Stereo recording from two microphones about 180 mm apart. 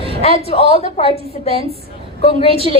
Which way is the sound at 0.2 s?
35° left (ahead or behind).